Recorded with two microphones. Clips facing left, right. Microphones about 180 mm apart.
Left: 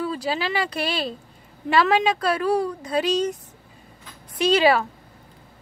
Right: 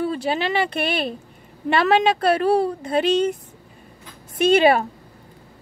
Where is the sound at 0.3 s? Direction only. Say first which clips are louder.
Right 3 dB; 55° right (ahead or behind).